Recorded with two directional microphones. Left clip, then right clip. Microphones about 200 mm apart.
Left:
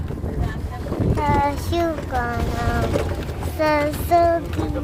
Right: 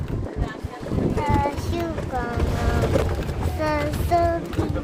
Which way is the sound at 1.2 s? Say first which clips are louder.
Left 6 dB; 30° left (ahead or behind).